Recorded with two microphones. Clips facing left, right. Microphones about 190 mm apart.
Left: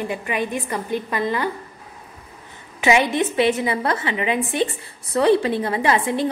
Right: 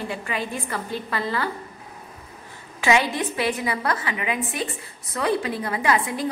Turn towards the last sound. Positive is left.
turn(degrees=25)  # may be behind; listen again after turning